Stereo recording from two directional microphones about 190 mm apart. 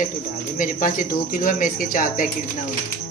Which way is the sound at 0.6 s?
45° left (ahead or behind).